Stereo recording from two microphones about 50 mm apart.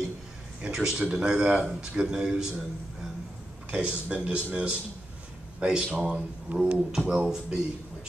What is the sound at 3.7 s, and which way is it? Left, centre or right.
Speech, centre.